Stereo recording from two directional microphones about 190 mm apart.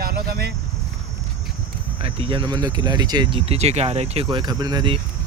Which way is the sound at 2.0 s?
25° right (ahead or behind).